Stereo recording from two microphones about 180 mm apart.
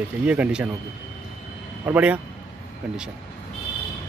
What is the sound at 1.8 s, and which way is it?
Speech, 10° right (ahead or behind).